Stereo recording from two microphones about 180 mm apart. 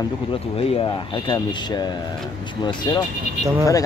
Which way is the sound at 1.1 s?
25° left (ahead or behind).